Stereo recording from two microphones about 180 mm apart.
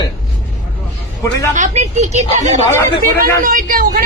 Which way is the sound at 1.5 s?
40° right (ahead or behind).